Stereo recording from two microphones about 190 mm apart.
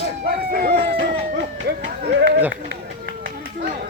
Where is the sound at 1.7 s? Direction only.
55° right (ahead or behind).